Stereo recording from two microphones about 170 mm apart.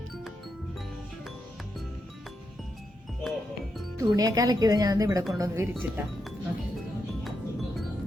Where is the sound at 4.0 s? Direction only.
20° right (ahead or behind).